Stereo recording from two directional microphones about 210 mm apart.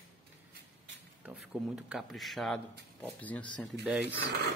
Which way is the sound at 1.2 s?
5° right (ahead or behind).